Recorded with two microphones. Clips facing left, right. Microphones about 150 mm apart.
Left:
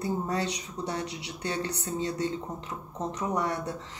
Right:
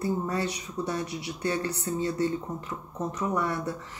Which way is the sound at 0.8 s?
20° left (ahead or behind).